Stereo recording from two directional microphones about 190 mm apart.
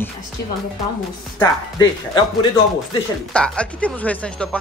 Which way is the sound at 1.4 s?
20° left (ahead or behind).